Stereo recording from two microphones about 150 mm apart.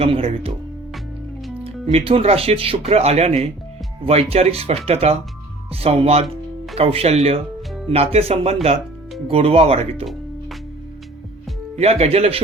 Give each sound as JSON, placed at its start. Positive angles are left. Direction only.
{"t": 0.0, "sound": "speech", "side_deg": -40}
{"t": 1.6, "sound": "speech", "side_deg": -40}
{"t": 11.8, "sound": "speech", "side_deg": -45}